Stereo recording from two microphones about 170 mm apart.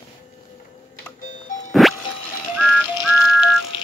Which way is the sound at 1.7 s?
Centre (ahead or behind).